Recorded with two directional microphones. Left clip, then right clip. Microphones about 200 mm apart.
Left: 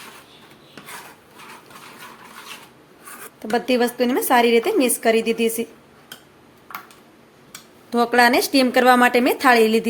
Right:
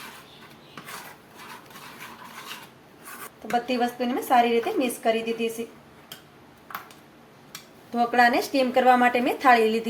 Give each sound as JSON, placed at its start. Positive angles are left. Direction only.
{"t": 3.5, "sound": "a woman's voice", "side_deg": 60}
{"t": 7.9, "sound": "a woman's voice", "side_deg": 40}